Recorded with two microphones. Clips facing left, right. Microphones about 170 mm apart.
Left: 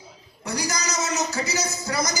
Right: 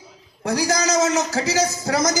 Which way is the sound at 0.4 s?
90° right.